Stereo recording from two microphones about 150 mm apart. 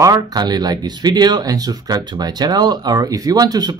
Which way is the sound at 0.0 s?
25° right (ahead or behind).